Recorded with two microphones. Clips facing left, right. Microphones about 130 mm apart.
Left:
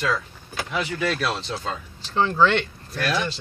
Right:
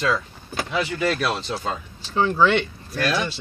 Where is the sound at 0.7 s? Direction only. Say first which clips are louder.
Right 2 dB; 5° right (ahead or behind).